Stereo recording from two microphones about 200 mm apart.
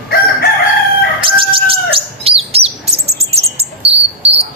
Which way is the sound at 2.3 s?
30° right (ahead or behind).